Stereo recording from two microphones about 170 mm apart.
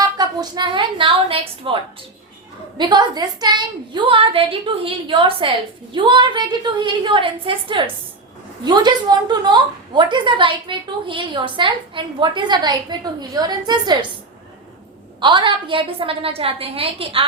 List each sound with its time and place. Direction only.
0.2 s a woman's voice: 25° right (ahead or behind)
15.2 s a woman's voice: 30° right (ahead or behind)